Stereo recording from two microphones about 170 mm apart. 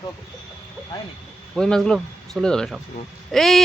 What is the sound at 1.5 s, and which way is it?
Speech, centre (ahead or behind).